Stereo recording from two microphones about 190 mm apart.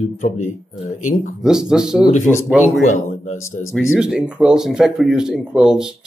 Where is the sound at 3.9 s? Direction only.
5° right (ahead or behind).